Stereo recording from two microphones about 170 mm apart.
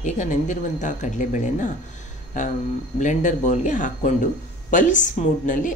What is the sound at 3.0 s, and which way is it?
Speech, 45° left (ahead or behind).